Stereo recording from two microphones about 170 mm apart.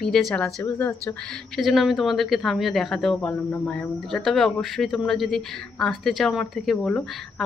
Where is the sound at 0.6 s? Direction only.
15° left (ahead or behind).